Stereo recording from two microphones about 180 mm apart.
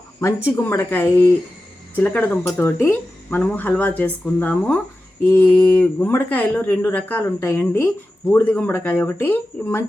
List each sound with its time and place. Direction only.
0.4 s speech: 15° left (ahead or behind)